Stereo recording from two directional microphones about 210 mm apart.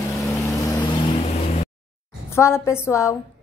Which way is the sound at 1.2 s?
30° left (ahead or behind).